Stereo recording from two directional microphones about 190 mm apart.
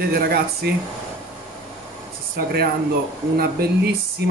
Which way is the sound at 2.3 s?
55° right (ahead or behind).